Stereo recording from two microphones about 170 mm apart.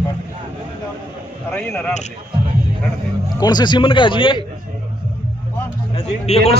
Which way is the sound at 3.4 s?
25° left (ahead or behind).